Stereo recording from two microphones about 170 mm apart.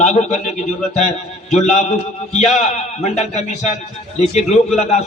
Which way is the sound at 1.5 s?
40° left (ahead or behind).